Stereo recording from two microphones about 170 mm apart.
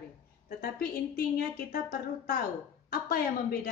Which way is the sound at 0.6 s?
65° left (ahead or behind).